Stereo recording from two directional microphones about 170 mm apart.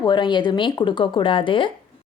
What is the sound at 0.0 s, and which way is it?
Speech, 25° left (ahead or behind).